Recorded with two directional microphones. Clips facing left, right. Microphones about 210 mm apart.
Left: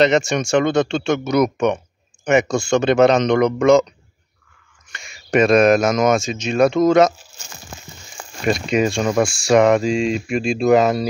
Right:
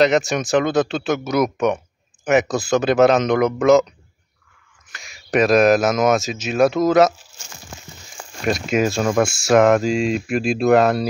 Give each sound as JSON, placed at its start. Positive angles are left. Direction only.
{"t": 0.0, "sound": "speech", "side_deg": 0}
{"t": 4.8, "sound": "speech", "side_deg": 0}
{"t": 8.4, "sound": "speech", "side_deg": 0}